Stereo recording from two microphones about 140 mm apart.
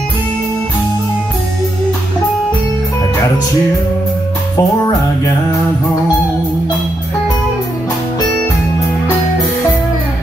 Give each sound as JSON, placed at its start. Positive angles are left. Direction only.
{"t": 4.6, "sound": "music", "side_deg": 25}